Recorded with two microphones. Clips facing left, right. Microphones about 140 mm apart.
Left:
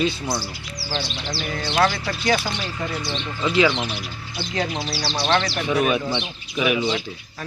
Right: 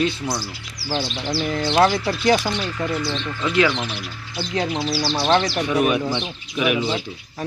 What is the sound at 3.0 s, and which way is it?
Speech, 20° left (ahead or behind).